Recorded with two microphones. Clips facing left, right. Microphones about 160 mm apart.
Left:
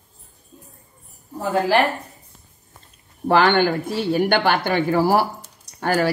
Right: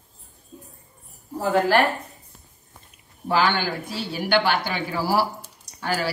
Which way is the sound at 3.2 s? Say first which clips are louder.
Left 6 dB; 60° left (ahead or behind).